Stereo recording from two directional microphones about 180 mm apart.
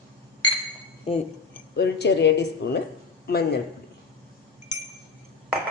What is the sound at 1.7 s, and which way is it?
Speech, 70° left (ahead or behind).